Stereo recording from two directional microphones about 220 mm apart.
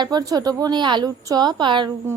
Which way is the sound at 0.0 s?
20° right (ahead or behind).